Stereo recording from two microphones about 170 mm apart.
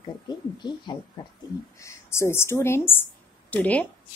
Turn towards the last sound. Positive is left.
turn(degrees=10)  # may be behind; listen again after turning